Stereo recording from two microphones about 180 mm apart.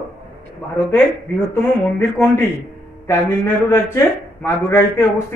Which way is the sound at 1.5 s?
10° left (ahead or behind).